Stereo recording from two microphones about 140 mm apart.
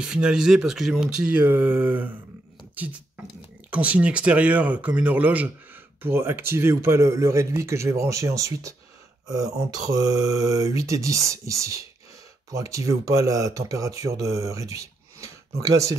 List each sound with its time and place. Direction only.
0.0 s speech: 5° right (ahead or behind); by 16.0 s 25° right (ahead or behind)